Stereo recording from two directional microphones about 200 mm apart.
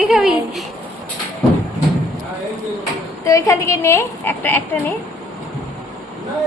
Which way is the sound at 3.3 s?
15° left (ahead or behind).